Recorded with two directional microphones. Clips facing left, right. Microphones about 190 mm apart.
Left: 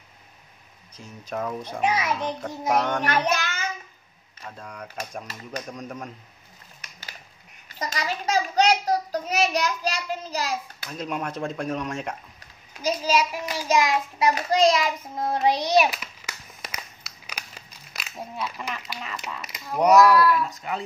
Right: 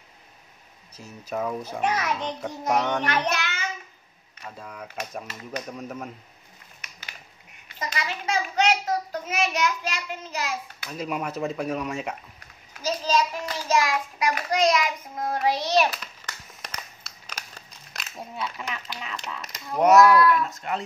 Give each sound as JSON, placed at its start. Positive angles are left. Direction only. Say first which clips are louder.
{"t": 0.9, "sound": "speech", "louder": "right 1 dB", "side_deg": -5}
{"t": 1.8, "sound": "a child's voice", "louder": "left 2 dB", "side_deg": 10}
{"t": 3.3, "sound": "child singing", "louder": "left 1 dB", "side_deg": 45}
{"t": 4.5, "sound": "speech", "louder": "even", "side_deg": -5}
{"t": 7.6, "sound": "a child's voice", "louder": "left 2 dB", "side_deg": 40}
{"t": 10.9, "sound": "speech", "louder": "even", "side_deg": -5}
{"t": 12.8, "sound": "child singing", "louder": "left 1 dB", "side_deg": 10}